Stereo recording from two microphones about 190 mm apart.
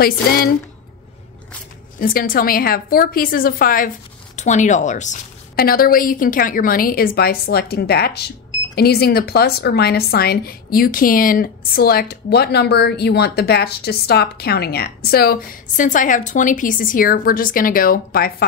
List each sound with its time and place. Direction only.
0.0 s a woman's voice: 50° left (ahead or behind)
2.0 s a woman's voice: 50° left (ahead or behind)